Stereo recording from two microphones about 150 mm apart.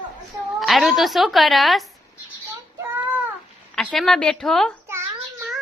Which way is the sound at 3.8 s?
Centre (ahead or behind).